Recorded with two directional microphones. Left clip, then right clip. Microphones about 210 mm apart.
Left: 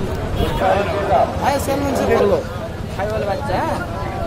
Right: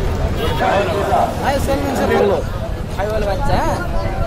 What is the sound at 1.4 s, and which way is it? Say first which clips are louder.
Speech: even; 50° left (ahead or behind).